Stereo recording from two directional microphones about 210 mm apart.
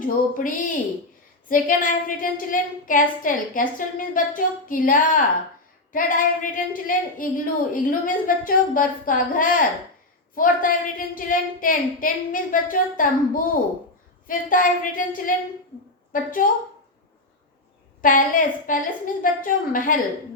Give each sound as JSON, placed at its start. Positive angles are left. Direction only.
{"t": 0.0, "sound": "a woman's voice", "side_deg": 40}
{"t": 18.0, "sound": "a woman's voice", "side_deg": 40}